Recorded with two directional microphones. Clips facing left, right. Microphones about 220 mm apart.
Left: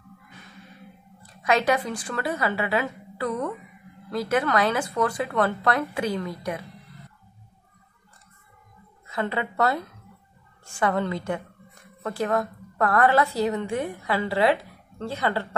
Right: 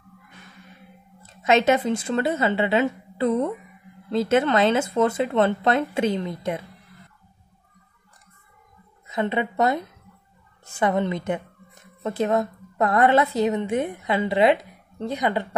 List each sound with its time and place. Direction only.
1.2 s speech: 25° right (ahead or behind)
9.0 s a woman's voice: 20° right (ahead or behind)